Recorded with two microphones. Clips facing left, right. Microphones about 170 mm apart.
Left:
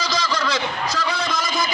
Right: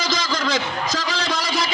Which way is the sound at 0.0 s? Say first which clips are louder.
Even; 50° right (ahead or behind).